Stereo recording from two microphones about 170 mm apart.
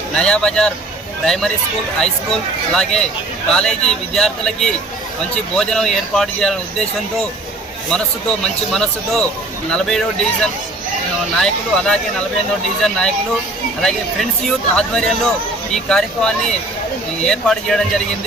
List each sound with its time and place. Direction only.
0.2 s speech: 5° left (ahead or behind)
8.7 s speech: 5° left (ahead or behind)